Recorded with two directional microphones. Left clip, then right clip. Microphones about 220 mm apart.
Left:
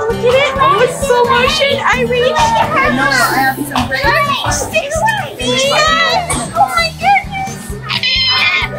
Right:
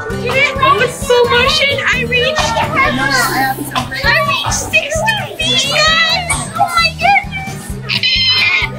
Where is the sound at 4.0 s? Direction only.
10° left (ahead or behind).